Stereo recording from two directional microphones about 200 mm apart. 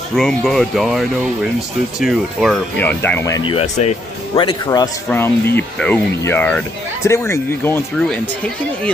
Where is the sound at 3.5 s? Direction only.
30° left (ahead or behind).